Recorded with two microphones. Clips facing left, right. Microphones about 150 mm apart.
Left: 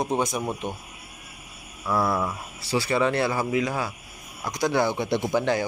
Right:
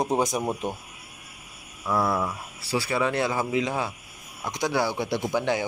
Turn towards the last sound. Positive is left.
turn(degrees=-15)  # may be behind; listen again after turning